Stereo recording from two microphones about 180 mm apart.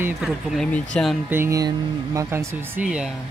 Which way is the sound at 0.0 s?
5° right (ahead or behind).